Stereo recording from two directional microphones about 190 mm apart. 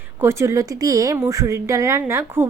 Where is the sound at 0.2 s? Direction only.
15° right (ahead or behind).